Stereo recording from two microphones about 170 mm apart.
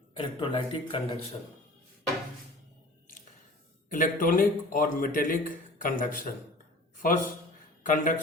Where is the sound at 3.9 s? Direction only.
50° left (ahead or behind).